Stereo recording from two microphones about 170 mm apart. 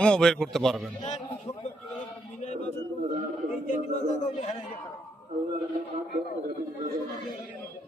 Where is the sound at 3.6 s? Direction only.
45° left (ahead or behind).